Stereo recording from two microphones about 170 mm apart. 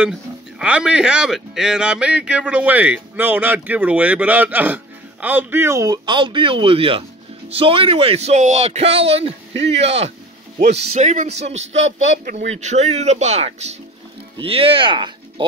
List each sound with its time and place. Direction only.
0.6 s speech: 5° right (ahead or behind); by 11.7 s 40° right (ahead or behind)
11.7 s speech: 90° right
12.4 s speech: 40° right (ahead or behind)